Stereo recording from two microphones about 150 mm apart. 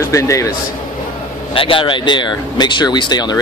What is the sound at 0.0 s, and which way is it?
Speech, 20° left (ahead or behind).